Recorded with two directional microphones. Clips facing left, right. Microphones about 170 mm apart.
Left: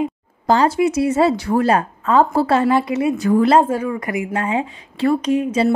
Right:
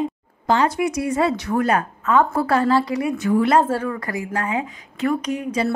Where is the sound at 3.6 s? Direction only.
10° left (ahead or behind).